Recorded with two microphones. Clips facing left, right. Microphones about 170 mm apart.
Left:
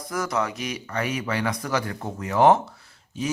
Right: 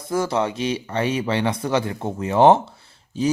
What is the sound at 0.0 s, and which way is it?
Speech, 30° right (ahead or behind).